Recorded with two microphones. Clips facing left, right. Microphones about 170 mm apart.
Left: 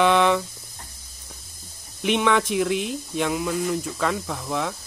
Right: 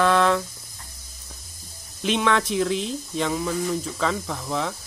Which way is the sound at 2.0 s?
10° left (ahead or behind).